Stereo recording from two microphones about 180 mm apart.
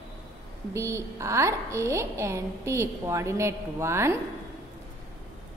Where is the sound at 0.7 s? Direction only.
15° right (ahead or behind).